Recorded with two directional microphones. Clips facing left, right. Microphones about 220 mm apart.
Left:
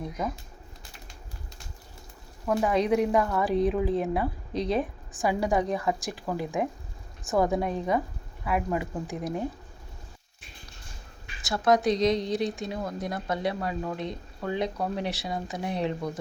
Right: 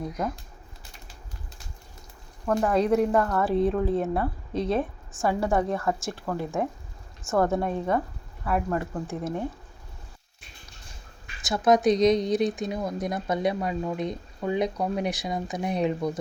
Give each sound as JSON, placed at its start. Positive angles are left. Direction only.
{"t": 2.5, "sound": "speech", "side_deg": 10}
{"t": 5.1, "sound": "speech", "side_deg": 15}
{"t": 6.1, "sound": "speech", "side_deg": 5}
{"t": 11.4, "sound": "speech", "side_deg": -20}